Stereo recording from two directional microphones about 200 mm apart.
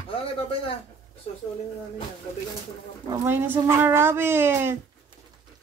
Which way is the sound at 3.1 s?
10° right (ahead or behind).